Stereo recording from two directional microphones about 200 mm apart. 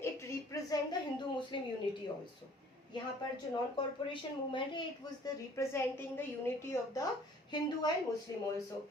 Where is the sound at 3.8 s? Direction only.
25° left (ahead or behind).